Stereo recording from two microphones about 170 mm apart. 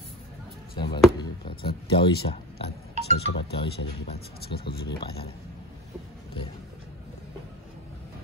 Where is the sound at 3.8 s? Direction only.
70° left (ahead or behind).